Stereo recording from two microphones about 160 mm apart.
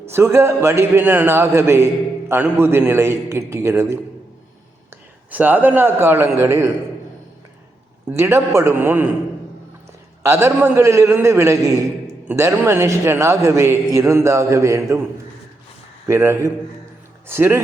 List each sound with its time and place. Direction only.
0.1 s a man's voice: 15° right (ahead or behind)
8.1 s a man's voice: 15° right (ahead or behind)
10.2 s a man's voice: 15° right (ahead or behind)
16.0 s a man's voice: 15° right (ahead or behind)